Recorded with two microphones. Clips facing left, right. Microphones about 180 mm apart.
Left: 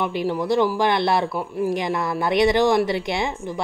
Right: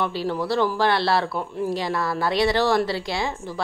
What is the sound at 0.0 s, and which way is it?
Speech, 15° left (ahead or behind).